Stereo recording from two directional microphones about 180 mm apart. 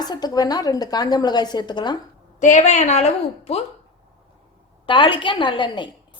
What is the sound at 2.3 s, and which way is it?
A woman's voice, 45° left (ahead or behind).